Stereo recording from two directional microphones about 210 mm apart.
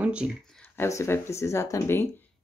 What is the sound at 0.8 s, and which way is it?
Speech, 15° left (ahead or behind).